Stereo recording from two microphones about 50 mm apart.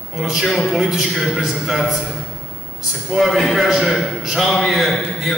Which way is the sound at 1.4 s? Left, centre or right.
Centre.